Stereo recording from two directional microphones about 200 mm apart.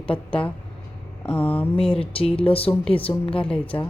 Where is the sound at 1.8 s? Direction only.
30° left (ahead or behind).